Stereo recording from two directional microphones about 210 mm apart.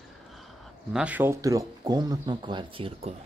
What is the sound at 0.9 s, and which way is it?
Speech, 5° right (ahead or behind).